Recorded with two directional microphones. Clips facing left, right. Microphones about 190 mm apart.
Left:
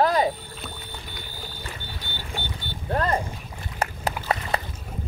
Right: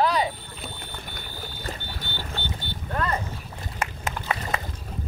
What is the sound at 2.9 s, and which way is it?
Boat, 35° left (ahead or behind).